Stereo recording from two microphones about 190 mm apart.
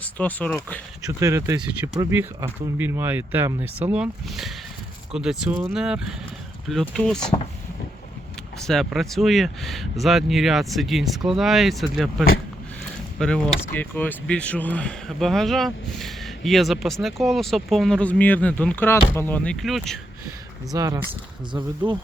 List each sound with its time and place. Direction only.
0.0 s speech: 10° left (ahead or behind)
1.0 s speech: 15° right (ahead or behind); by 7.3 s 5° left (ahead or behind)
8.6 s speech: centre (ahead or behind)
13.1 s speech: 5° left (ahead or behind)
20.7 s speech: 20° right (ahead or behind)